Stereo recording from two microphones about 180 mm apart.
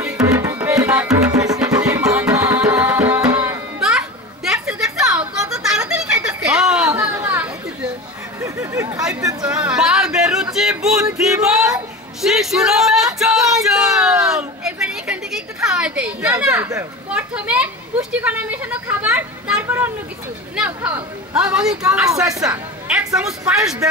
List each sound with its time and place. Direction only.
0.0 s tabla: 10° right (ahead or behind)
1.3 s music: 20° right (ahead or behind)
1.6 s tabla: 5° right (ahead or behind)
4.5 s a sound: 5° right (ahead or behind); by 9.0 s 20° right (ahead or behind)
9.4 s a sound: 5° right (ahead or behind)
17.1 s a child's voice: 5° right (ahead or behind)